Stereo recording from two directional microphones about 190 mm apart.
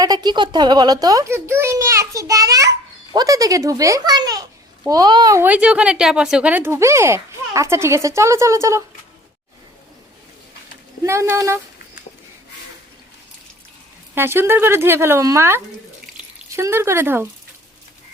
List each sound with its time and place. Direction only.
0.0 s a child's voice: 20° right (ahead or behind)
11.0 s a child's voice: 15° right (ahead or behind)
14.2 s a child's voice: 10° right (ahead or behind)
16.1 s drip: 15° right (ahead or behind)